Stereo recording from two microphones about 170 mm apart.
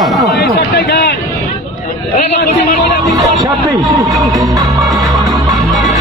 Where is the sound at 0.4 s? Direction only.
70° left (ahead or behind).